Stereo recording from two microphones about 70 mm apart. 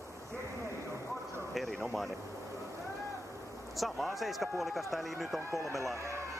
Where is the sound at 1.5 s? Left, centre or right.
Centre.